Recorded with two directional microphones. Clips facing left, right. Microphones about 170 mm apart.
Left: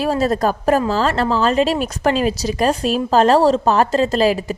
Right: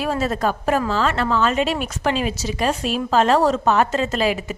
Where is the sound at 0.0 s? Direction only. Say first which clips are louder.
Left 4 dB; 35° left (ahead or behind).